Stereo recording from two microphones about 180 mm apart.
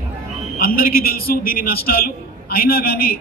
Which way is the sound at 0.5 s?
55° left (ahead or behind).